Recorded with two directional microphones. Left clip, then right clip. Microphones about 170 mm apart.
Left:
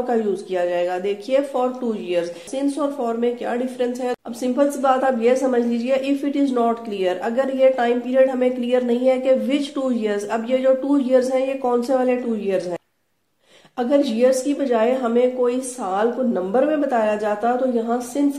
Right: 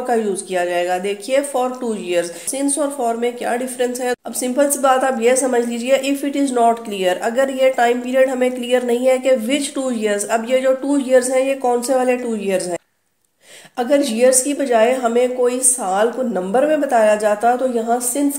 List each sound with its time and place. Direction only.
0.0 s speech: 40° right (ahead or behind)
13.7 s speech: 40° right (ahead or behind)